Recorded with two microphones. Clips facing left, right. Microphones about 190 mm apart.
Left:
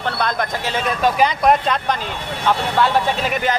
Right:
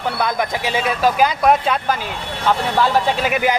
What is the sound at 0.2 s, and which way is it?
Speech, 10° right (ahead or behind).